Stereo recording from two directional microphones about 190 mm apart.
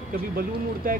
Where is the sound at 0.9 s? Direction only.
45° right (ahead or behind).